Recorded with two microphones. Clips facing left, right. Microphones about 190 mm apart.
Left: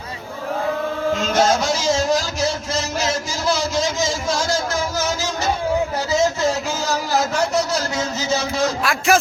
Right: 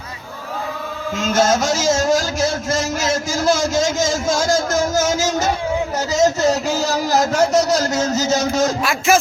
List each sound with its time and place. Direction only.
1.2 s speech: 45° right (ahead or behind)
8.8 s speech: centre (ahead or behind)